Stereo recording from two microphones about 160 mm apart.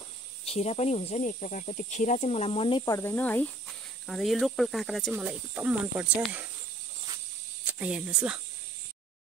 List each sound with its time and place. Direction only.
0.5 s speech: 40° left (ahead or behind)
2.8 s cricket: 15° left (ahead or behind)
4.1 s speech: centre (ahead or behind)
7.8 s speech: 10° right (ahead or behind)